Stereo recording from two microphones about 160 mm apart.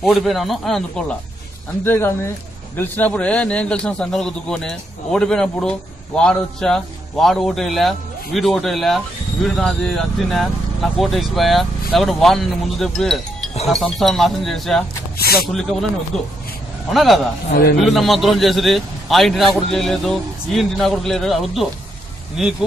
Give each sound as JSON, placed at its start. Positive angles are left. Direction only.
{"t": 0.0, "sound": "a man's voice", "side_deg": 0}
{"t": 1.9, "sound": "a man's voice", "side_deg": 15}
{"t": 15.1, "sound": "a man's voice", "side_deg": 70}
{"t": 15.4, "sound": "a man's voice", "side_deg": 0}
{"t": 16.9, "sound": "a man's voice", "side_deg": 0}
{"t": 17.5, "sound": "a man's voice", "side_deg": 75}
{"t": 17.7, "sound": "a man's voice", "side_deg": 0}